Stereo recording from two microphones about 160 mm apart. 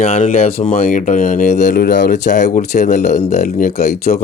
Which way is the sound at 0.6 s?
55° left (ahead or behind).